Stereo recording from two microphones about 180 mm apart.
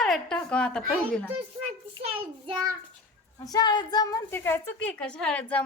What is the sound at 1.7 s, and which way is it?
Speech, 35° right (ahead or behind).